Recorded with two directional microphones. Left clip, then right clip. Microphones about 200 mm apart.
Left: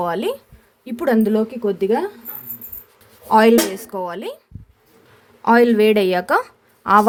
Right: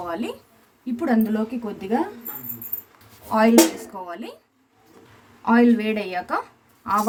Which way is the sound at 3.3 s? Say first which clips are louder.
Left 4 dB; 50° left (ahead or behind).